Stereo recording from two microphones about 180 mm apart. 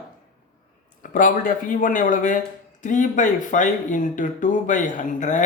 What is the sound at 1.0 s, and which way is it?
Speech, 50° left (ahead or behind).